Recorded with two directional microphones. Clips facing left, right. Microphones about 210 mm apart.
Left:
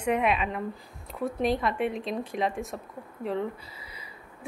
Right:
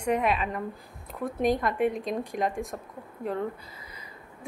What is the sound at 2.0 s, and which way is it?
Speech, 45° right (ahead or behind).